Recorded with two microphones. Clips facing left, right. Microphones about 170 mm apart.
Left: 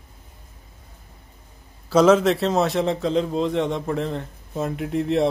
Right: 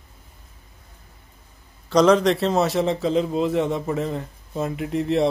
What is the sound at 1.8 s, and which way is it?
A man's voice, 5° left (ahead or behind).